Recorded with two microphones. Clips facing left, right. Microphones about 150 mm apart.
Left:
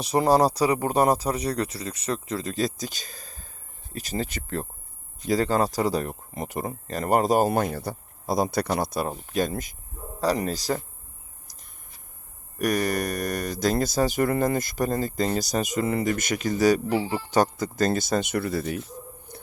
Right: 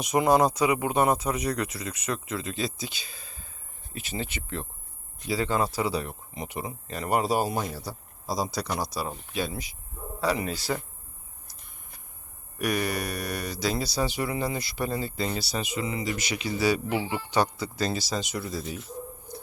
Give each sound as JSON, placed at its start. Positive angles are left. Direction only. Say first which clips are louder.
{"t": 0.0, "sound": "speech", "louder": "left 2 dB", "side_deg": 35}
{"t": 12.5, "sound": "speech", "louder": "left 4 dB", "side_deg": 45}
{"t": 19.3, "sound": "a sound", "louder": "right 3 dB", "side_deg": 60}